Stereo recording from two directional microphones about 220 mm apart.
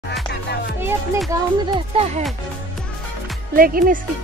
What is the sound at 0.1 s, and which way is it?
Music, 50° left (ahead or behind).